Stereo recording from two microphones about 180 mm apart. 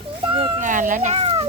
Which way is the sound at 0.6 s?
45° right (ahead or behind).